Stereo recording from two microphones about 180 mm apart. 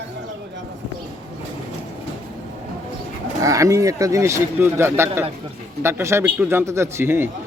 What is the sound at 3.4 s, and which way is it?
A man's voice, 20° right (ahead or behind).